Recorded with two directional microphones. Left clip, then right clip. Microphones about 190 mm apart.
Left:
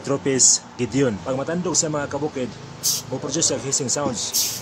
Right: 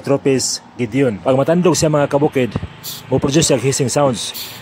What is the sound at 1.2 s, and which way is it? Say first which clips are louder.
A man's voice: right 11 dB; 45° right (ahead or behind).